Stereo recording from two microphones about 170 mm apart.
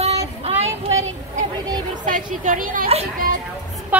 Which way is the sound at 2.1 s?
50° right (ahead or behind).